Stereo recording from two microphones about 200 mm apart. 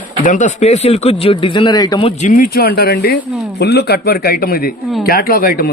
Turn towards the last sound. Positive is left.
turn(degrees=45)  # may be behind; listen again after turning